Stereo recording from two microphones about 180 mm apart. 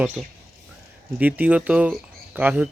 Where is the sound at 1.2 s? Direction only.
10° right (ahead or behind).